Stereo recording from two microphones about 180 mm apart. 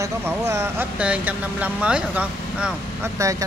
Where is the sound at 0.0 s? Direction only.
15° right (ahead or behind).